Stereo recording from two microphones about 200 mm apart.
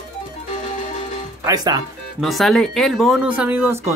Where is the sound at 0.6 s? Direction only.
35° left (ahead or behind).